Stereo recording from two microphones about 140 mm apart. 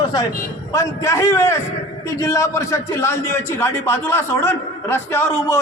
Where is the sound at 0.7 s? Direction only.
20° left (ahead or behind).